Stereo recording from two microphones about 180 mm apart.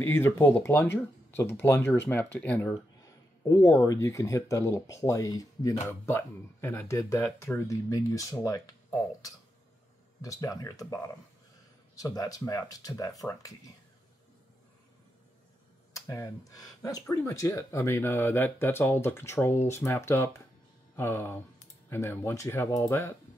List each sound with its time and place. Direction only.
0.0 s speech: 15° left (ahead or behind)
10.2 s speech: 20° left (ahead or behind)
11.9 s speech: 20° left (ahead or behind)
15.9 s speech: 15° left (ahead or behind)